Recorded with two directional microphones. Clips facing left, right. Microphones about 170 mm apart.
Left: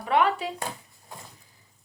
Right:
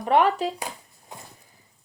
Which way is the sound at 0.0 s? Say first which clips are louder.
Right 3 dB; 40° right (ahead or behind).